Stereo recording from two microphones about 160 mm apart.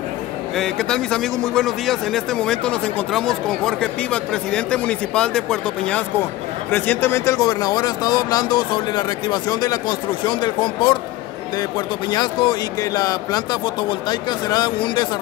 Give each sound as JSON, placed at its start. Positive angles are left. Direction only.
{"t": 0.6, "sound": "a man's voice", "side_deg": 5}
{"t": 12.1, "sound": "speech", "side_deg": 30}